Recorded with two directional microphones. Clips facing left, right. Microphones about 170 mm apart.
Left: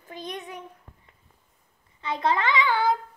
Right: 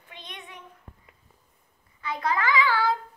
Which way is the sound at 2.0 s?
25° left (ahead or behind).